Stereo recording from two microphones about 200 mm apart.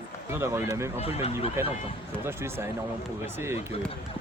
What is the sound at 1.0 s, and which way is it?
Speech, 30° left (ahead or behind).